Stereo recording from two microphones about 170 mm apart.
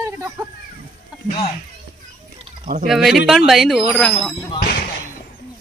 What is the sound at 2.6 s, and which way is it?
Speech, 60° right (ahead or behind).